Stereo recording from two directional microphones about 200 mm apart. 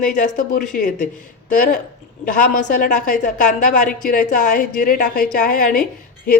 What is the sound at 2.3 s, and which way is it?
A woman's voice, 40° left (ahead or behind).